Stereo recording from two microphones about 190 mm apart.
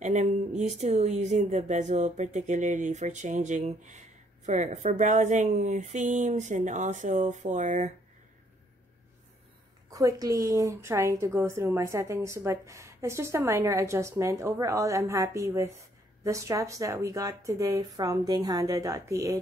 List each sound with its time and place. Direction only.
0.0 s speech: 35° right (ahead or behind)
9.8 s a woman's voice: 20° right (ahead or behind)